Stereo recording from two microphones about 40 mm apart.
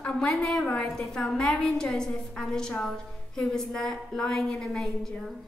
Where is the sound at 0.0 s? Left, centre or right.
Centre.